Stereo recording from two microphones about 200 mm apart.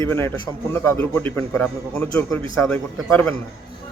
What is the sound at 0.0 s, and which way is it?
A man's voice, 10° left (ahead or behind).